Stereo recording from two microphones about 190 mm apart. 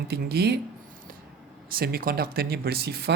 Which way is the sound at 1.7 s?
50° right (ahead or behind).